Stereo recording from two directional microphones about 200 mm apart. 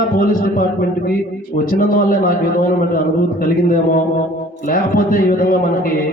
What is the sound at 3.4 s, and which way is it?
A man's voice, 45° left (ahead or behind).